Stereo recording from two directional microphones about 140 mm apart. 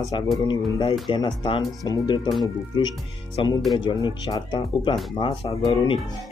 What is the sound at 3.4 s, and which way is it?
Speech, 40° left (ahead or behind).